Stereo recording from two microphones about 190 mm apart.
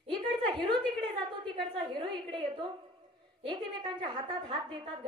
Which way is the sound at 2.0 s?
25° right (ahead or behind).